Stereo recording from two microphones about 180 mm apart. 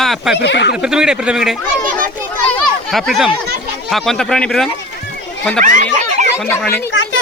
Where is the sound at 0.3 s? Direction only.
75° left (ahead or behind).